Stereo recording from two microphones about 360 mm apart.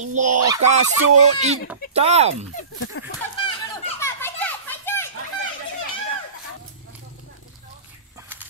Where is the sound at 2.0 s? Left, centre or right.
Centre.